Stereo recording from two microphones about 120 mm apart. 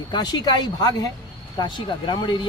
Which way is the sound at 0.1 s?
35° left (ahead or behind).